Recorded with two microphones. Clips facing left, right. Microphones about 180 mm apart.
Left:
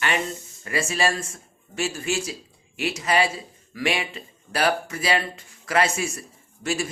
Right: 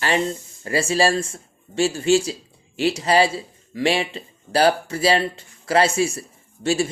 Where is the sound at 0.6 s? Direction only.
30° right (ahead or behind).